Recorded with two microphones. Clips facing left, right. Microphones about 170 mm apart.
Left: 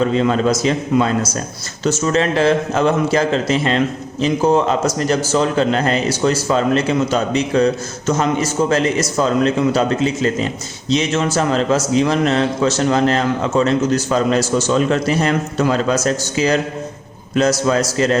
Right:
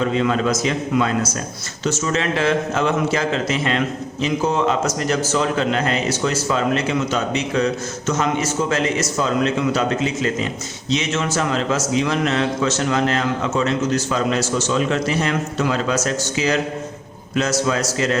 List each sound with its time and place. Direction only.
0.1 s a man's voice: 35° left (ahead or behind)